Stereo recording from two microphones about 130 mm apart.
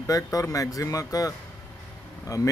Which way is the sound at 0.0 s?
25° left (ahead or behind).